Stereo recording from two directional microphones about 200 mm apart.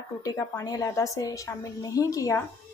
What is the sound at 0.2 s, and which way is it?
A woman's voice, 15° left (ahead or behind).